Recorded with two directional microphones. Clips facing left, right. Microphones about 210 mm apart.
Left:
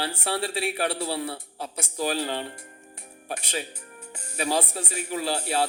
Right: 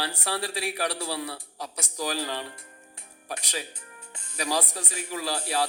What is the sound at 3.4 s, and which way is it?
A man's voice, 25° left (ahead or behind).